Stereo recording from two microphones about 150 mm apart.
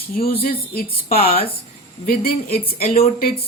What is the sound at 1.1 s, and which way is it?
Speech, 40° left (ahead or behind).